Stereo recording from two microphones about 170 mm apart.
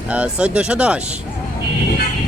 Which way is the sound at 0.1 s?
5° right (ahead or behind).